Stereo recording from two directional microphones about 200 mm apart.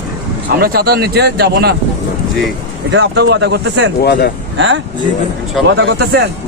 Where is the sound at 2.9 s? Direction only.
60° right (ahead or behind).